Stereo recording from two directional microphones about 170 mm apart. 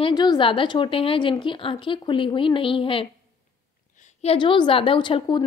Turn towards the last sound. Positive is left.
turn(degrees=30)  # may be behind; listen again after turning